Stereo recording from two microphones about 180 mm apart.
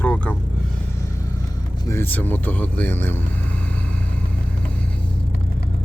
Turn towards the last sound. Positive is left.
turn(degrees=5)  # may be behind; listen again after turning